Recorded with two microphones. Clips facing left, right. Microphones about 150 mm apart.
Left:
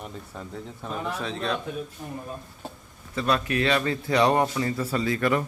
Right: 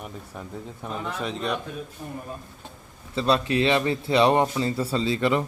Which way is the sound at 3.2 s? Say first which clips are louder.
Right 3 dB; 25° right (ahead or behind).